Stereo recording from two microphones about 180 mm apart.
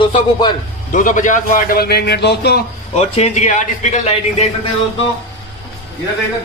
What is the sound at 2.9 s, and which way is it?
A man's voice, 35° left (ahead or behind).